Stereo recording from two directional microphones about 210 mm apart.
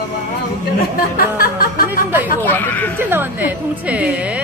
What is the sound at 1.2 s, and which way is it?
Music, 45° left (ahead or behind).